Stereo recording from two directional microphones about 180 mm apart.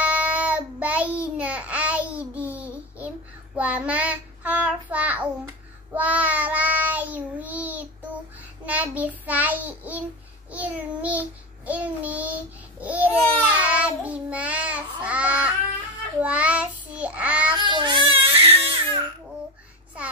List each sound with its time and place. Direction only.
0.0 s child singing: 10° right (ahead or behind)
1.1 s babbling: 5° right (ahead or behind)
3.5 s child singing: 5° right (ahead or behind)
12.8 s babbling: 10° right (ahead or behind)
13.7 s child singing: 10° right (ahead or behind)
17.6 s baby cry: 25° right (ahead or behind)